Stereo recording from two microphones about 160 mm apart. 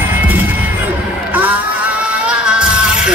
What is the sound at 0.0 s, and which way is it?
Music, 10° right (ahead or behind).